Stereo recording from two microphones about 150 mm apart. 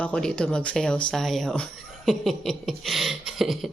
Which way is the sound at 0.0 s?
5° left (ahead or behind).